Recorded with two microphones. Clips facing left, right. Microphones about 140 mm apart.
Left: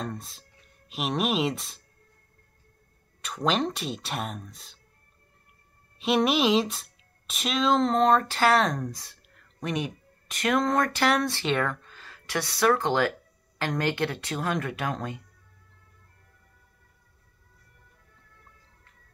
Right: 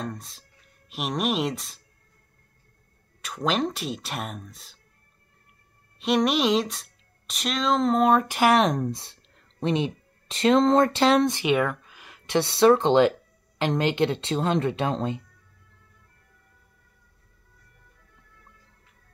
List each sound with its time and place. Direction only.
0.0 s speech: centre (ahead or behind)
3.2 s speech: centre (ahead or behind)
5.9 s speech: centre (ahead or behind); by 15.2 s 25° right (ahead or behind)